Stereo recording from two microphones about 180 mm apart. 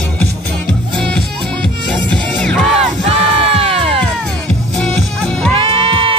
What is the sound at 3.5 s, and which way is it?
Music, 30° right (ahead or behind).